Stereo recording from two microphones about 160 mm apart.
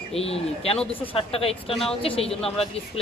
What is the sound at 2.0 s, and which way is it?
Speech, 35° left (ahead or behind).